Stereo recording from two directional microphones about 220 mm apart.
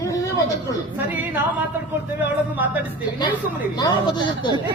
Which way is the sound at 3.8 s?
20° left (ahead or behind).